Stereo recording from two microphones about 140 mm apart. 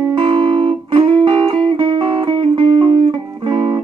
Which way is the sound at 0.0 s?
35° right (ahead or behind).